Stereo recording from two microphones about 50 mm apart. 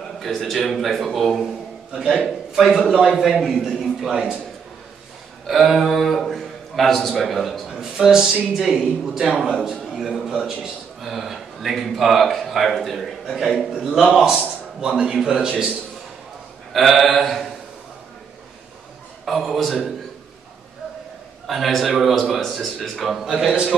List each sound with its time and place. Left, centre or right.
0.2 s a man's voice: centre
1.4 s a man's voice: centre
5.5 s a man's voice: centre
7.7 s a man's voice: centre
16.7 s a man's voice: centre
19.2 s a man's voice: centre
21.5 s a man's voice: centre